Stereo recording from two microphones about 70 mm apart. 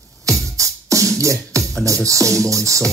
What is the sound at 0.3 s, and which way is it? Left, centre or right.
Music, right.